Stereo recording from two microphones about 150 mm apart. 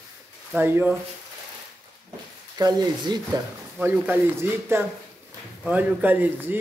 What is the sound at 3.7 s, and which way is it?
Speech, 15° right (ahead or behind).